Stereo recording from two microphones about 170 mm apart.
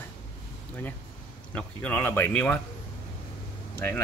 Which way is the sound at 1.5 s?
10° left (ahead or behind).